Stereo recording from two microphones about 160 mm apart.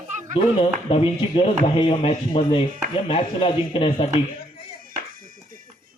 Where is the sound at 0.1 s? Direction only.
50° right (ahead or behind).